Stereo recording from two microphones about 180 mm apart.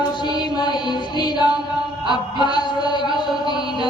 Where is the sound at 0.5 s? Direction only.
25° left (ahead or behind).